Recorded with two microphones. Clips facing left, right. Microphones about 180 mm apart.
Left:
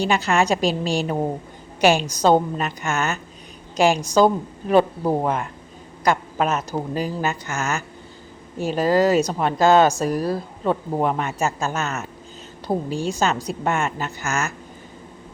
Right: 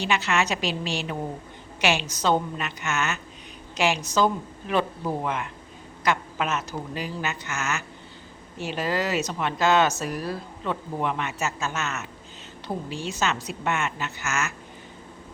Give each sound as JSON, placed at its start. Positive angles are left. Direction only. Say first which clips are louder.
{"t": 0.0, "sound": "a woman's voice", "louder": "left 5 dB", "side_deg": 35}